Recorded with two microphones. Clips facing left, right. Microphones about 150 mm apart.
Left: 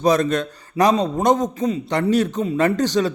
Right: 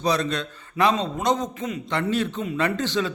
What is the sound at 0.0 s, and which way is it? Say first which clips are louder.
A man's voice: left 6 dB; 45° left (ahead or behind).